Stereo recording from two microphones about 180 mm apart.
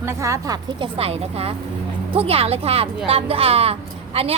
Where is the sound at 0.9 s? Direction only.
35° right (ahead or behind).